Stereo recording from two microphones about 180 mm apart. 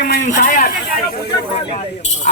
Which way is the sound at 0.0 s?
55° left (ahead or behind).